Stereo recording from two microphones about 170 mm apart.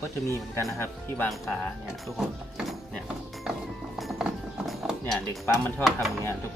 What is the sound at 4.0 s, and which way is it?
Music, centre (ahead or behind).